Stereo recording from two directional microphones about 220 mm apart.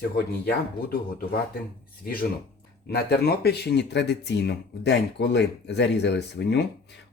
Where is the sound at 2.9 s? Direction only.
45° left (ahead or behind).